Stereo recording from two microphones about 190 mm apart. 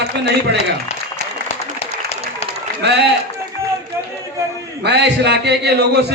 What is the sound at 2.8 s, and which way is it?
Speech, 60° right (ahead or behind).